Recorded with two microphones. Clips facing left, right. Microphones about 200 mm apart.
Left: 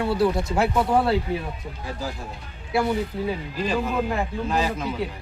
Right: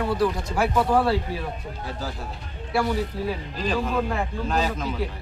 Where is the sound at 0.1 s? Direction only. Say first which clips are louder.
Left 2 dB; 25° left (ahead or behind).